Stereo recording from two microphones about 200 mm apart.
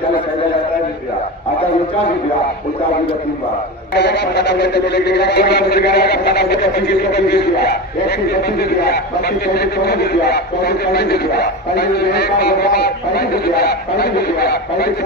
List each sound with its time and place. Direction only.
3.9 s a man's voice: 55° left (ahead or behind)